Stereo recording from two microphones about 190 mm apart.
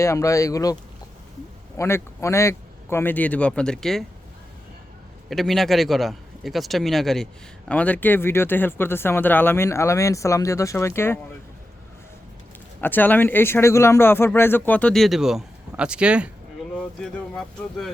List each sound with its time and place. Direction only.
0.0 s speech: 15° left (ahead or behind)
5.3 s a man's voice: centre (ahead or behind)
12.8 s speech: 10° left (ahead or behind); by 16.3 s 5° right (ahead or behind)
16.7 s a man's voice: 5° left (ahead or behind)